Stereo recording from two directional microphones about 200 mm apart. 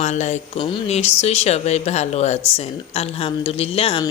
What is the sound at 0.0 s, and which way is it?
A woman's voice, 35° left (ahead or behind).